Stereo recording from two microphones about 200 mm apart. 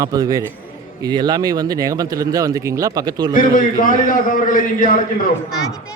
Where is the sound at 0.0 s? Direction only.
20° right (ahead or behind).